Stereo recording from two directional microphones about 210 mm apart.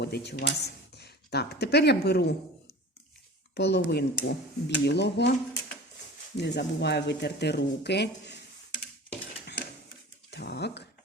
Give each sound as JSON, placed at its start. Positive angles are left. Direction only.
{"t": 0.0, "sound": "speech", "side_deg": 50}
{"t": 3.5, "sound": "speech", "side_deg": 50}
{"t": 10.3, "sound": "a sound", "side_deg": 50}